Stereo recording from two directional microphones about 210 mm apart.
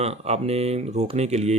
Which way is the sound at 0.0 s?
30° right (ahead or behind).